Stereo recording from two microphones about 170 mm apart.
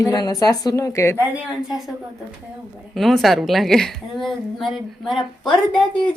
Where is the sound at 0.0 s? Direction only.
20° left (ahead or behind).